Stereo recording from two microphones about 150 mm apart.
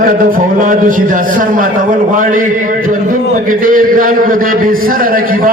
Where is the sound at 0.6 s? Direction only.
65° right (ahead or behind).